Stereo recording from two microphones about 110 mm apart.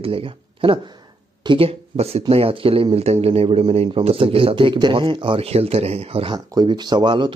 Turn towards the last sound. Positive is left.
turn(degrees=-45)  # may be behind; listen again after turning